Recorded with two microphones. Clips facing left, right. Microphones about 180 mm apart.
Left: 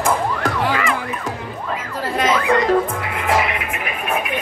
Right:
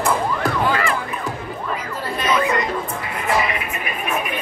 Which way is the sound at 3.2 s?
90° left.